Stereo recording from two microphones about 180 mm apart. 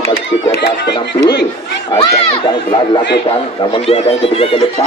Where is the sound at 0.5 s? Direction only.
65° left (ahead or behind).